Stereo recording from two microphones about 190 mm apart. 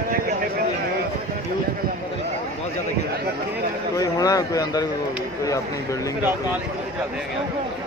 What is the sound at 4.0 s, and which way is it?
Speech, 20° left (ahead or behind).